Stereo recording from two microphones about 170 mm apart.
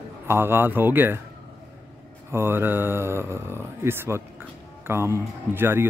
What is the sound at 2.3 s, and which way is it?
Speech, 15° right (ahead or behind).